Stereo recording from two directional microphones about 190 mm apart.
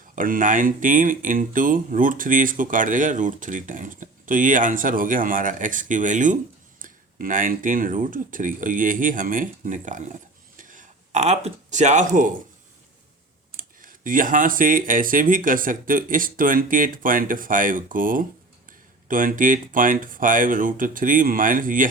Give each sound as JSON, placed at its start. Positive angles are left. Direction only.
{"t": 0.2, "sound": "speech", "side_deg": -45}
{"t": 10.6, "sound": "a sound", "side_deg": -45}
{"t": 13.6, "sound": "speech", "side_deg": -45}